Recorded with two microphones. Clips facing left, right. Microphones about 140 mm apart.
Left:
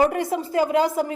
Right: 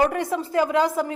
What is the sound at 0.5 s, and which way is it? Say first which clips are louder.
Speech: left 1 dB; 35° left (ahead or behind).